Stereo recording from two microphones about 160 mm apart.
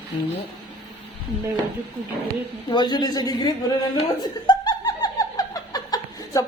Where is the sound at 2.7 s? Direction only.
25° left (ahead or behind).